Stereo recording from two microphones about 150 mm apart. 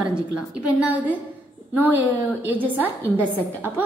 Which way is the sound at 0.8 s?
10° right (ahead or behind).